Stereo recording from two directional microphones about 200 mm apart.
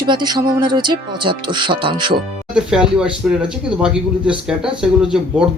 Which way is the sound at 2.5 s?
5° right (ahead or behind).